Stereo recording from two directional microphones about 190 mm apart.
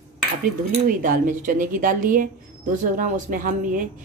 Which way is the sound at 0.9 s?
45° right (ahead or behind).